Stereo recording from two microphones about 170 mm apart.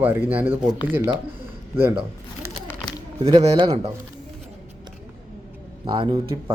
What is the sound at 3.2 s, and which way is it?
Speech, 35° right (ahead or behind).